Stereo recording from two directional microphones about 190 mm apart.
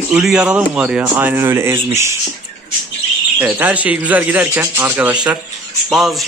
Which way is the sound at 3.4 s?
10° right (ahead or behind).